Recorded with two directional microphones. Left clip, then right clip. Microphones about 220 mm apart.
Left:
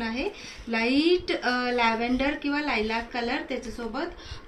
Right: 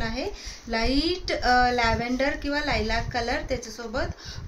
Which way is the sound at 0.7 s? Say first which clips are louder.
Left 2 dB; 45° right (ahead or behind).